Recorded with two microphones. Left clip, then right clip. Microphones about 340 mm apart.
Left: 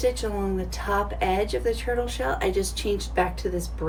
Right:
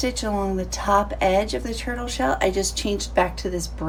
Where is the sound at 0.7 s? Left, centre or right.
Centre.